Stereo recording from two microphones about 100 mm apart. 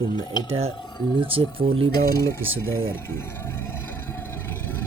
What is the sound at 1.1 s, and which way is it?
Speech, 70° right (ahead or behind).